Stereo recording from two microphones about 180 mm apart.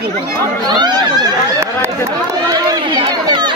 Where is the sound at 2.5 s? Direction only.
25° right (ahead or behind).